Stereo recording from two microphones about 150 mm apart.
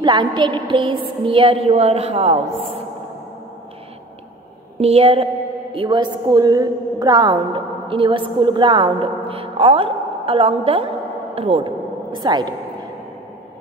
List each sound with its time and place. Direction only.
0.0 s a woman's voice: 30° right (ahead or behind)
4.7 s a woman's voice: 40° right (ahead or behind)